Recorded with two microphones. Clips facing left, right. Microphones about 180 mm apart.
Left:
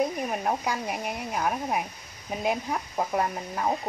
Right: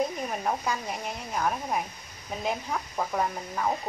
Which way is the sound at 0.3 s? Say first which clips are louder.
Left 1 dB; 15° left (ahead or behind).